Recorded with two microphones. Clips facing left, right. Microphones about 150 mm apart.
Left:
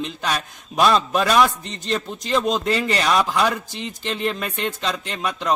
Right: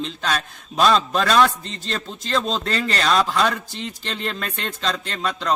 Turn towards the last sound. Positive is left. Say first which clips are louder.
# even
turn(degrees=15)  # may be behind; listen again after turning